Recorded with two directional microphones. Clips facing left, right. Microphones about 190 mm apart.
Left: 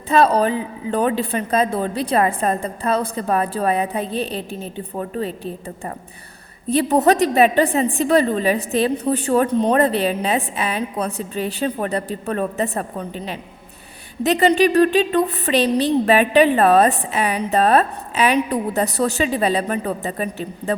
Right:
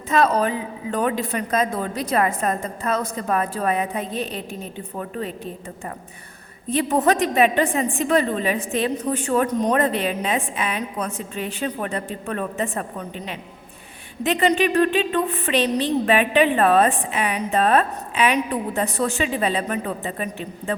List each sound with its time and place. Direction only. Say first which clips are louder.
0.1 s a woman's voice: left 3 dB; 30° left (ahead or behind)
6.7 s a woman's voice: left 4 dB; 35° left (ahead or behind)